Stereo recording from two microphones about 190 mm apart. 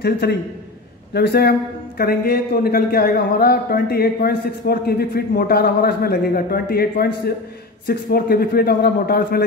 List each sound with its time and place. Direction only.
0.0 s a man's voice: 55° left (ahead or behind)